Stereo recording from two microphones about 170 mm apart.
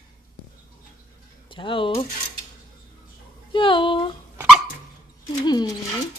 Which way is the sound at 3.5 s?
30° left (ahead or behind).